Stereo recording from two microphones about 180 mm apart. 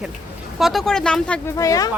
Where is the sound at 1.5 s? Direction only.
20° left (ahead or behind).